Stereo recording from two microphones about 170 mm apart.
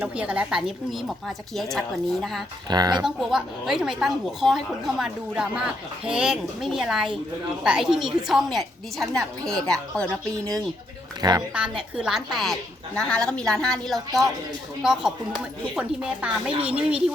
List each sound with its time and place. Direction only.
0.0 s a woman's voice: 10° right (ahead or behind)
2.6 s speech: 25° right (ahead or behind)
3.0 s a woman's voice: 5° right (ahead or behind)
11.2 s speech: 20° right (ahead or behind)
11.5 s a woman's voice: 5° right (ahead or behind)